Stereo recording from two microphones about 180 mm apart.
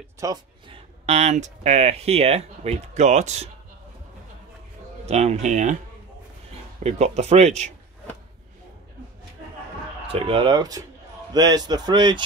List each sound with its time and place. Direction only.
0.2 s speech: 20° right (ahead or behind)
1.0 s speech: 35° right (ahead or behind)
5.0 s speech: 35° right (ahead or behind)
6.8 s speech: 40° right (ahead or behind)
10.1 s speech: 30° right (ahead or behind)